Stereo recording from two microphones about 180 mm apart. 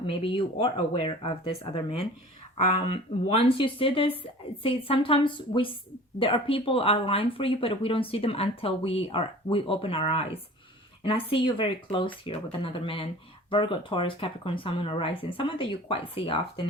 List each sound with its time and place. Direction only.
0.1 s speech: 30° left (ahead or behind)